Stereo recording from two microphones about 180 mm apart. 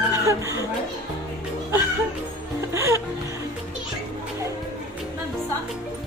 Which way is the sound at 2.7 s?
15° right (ahead or behind).